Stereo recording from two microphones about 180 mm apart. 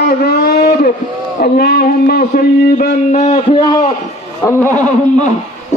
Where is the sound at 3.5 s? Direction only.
25° left (ahead or behind).